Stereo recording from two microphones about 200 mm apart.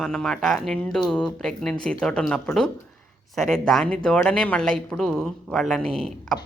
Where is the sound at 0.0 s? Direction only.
5° left (ahead or behind).